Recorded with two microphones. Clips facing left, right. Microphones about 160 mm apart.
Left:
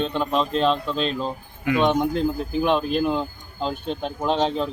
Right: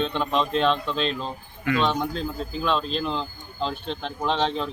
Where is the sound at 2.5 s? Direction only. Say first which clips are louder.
Left 4 dB; 55° left (ahead or behind).